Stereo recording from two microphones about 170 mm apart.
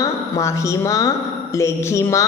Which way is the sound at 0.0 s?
15° left (ahead or behind).